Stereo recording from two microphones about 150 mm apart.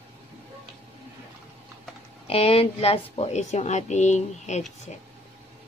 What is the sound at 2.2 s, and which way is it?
A woman's voice, 40° left (ahead or behind).